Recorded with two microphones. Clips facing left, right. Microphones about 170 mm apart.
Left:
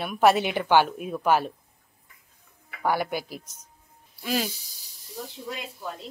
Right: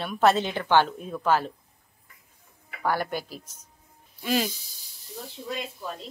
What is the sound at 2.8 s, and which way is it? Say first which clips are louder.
Speech: left 1 dB; 10° left (ahead or behind).